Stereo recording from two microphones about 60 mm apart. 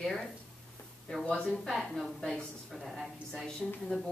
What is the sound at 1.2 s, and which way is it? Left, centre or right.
Speech, centre.